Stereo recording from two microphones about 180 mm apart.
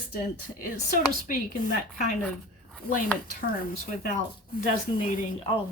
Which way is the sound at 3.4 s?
50° left (ahead or behind).